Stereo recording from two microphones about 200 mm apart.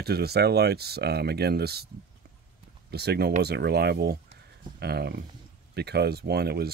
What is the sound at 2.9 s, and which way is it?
Speech, 55° right (ahead or behind).